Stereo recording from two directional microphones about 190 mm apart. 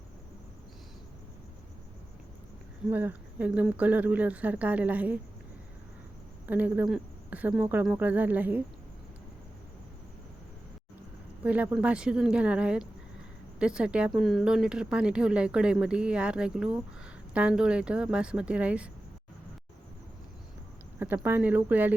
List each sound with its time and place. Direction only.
2.9 s speech: 10° right (ahead or behind)
6.5 s speech: 10° right (ahead or behind)
11.4 s speech: 5° right (ahead or behind)
21.0 s speech: 10° right (ahead or behind)